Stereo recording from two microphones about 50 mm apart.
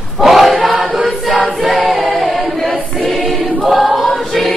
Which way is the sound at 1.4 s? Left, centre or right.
Centre.